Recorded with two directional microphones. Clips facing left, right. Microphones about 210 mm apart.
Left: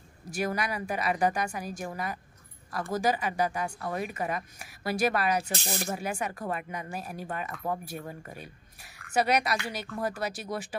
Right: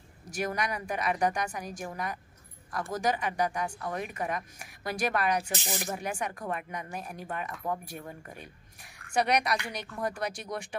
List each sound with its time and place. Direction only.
0.3 s a woman's voice: 5° left (ahead or behind)
5.4 s speech: 15° right (ahead or behind)
5.9 s a woman's voice: 5° left (ahead or behind)